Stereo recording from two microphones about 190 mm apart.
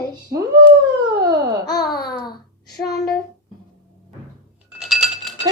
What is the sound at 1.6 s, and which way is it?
Babbling, 20° left (ahead or behind).